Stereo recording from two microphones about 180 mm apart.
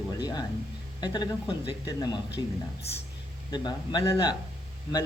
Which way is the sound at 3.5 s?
25° left (ahead or behind).